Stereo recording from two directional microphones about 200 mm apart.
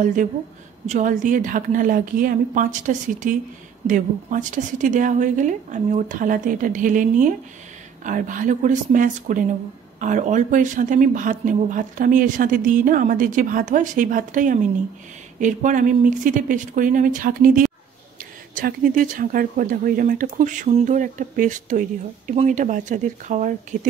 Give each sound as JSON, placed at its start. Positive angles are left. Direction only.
{"t": 0.0, "sound": "speech", "side_deg": -40}